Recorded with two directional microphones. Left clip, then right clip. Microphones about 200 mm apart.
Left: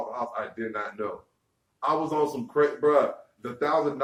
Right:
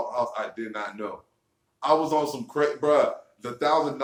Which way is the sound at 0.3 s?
20° right (ahead or behind).